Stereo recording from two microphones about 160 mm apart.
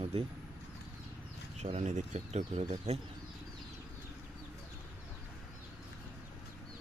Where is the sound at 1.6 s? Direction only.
45° right (ahead or behind).